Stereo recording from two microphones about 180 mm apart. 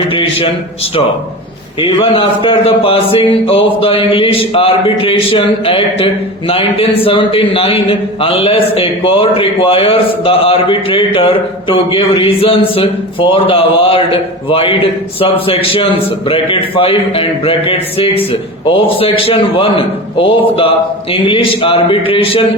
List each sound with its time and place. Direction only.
0.1 s a man's voice: 30° left (ahead or behind)
1.8 s a man's voice: 30° left (ahead or behind)